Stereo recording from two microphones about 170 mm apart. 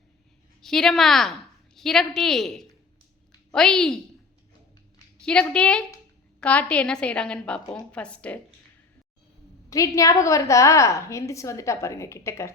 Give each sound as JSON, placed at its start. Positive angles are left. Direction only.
{"t": 0.6, "sound": "a woman's voice", "side_deg": 0}
{"t": 5.2, "sound": "a woman's voice", "side_deg": 5}
{"t": 9.6, "sound": "a woman's voice", "side_deg": 20}